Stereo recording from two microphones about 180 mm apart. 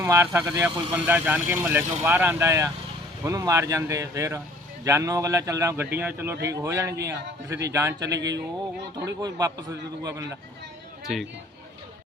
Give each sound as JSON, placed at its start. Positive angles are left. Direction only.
{"t": 0.0, "sound": "a man's voice", "side_deg": -15}
{"t": 11.0, "sound": "speech", "side_deg": 0}